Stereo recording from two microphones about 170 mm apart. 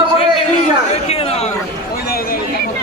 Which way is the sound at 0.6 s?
40° left (ahead or behind).